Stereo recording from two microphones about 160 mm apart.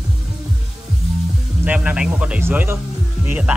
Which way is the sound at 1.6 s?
10° right (ahead or behind).